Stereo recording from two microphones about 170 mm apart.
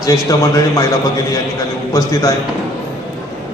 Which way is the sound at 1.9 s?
20° left (ahead or behind).